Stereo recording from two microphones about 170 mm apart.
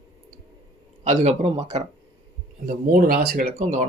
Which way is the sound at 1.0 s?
35° right (ahead or behind).